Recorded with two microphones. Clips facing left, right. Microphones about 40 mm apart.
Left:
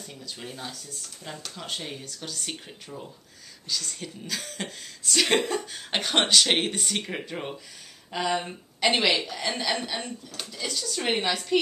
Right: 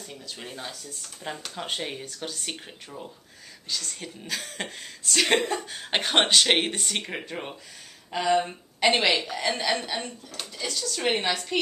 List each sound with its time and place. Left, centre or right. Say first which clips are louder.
0.0 s speech: even; centre
1.3 s speech: right 4 dB; right
3.6 s speech: left 1 dB; centre